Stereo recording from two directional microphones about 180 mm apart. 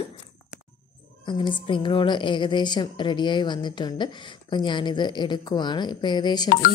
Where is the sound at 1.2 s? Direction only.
25° left (ahead or behind).